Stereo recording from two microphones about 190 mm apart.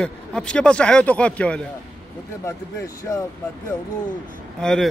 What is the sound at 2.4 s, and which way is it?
Speech, 15° left (ahead or behind).